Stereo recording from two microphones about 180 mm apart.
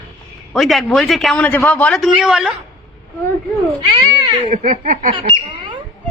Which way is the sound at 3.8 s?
25° right (ahead or behind).